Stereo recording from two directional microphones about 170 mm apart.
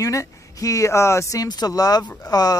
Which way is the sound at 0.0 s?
20° left (ahead or behind).